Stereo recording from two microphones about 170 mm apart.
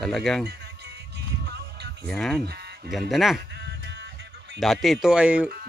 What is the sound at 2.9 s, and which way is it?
Speech, centre (ahead or behind).